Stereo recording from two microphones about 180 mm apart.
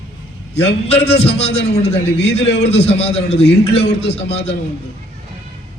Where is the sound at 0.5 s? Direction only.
35° left (ahead or behind).